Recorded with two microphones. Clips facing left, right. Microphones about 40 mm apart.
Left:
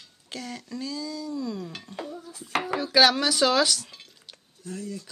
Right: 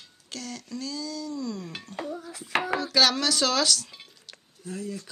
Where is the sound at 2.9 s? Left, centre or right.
Centre.